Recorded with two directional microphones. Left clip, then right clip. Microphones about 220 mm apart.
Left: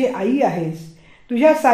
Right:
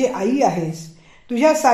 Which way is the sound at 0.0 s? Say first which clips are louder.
Even; 25° right (ahead or behind).